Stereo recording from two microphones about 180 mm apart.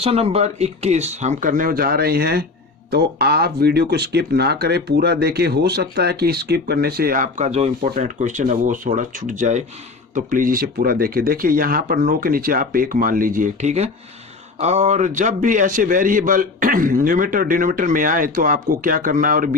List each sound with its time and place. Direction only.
0.0 s a man's voice: 35° right (ahead or behind); by 19.5 s 50° right (ahead or behind)